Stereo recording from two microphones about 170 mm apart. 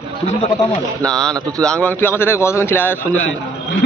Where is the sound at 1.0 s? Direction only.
5° left (ahead or behind).